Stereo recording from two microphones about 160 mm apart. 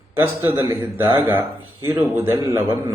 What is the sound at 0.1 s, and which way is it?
A man's voice, 15° right (ahead or behind).